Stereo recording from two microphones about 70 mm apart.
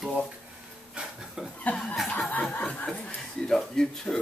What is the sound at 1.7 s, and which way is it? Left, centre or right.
Chuckle, left.